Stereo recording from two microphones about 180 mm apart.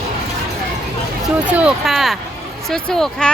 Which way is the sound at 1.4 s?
5° right (ahead or behind).